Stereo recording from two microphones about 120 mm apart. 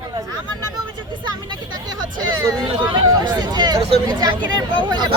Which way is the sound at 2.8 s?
35° right (ahead or behind).